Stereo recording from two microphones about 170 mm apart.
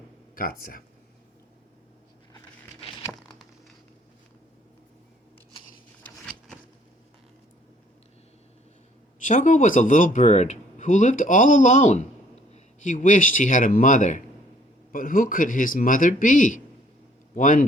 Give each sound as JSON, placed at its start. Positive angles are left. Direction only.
{"t": 0.3, "sound": "speech", "side_deg": 60}
{"t": 6.0, "sound": "a sound", "side_deg": 5}
{"t": 9.2, "sound": "speech", "side_deg": 50}